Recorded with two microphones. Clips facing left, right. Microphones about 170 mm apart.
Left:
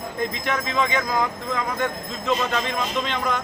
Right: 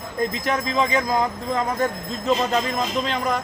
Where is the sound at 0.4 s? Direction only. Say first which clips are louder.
Right 1 dB; 35° right (ahead or behind).